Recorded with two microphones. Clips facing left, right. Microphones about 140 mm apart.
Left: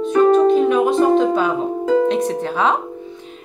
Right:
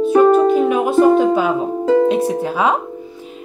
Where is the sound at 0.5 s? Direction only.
5° right (ahead or behind).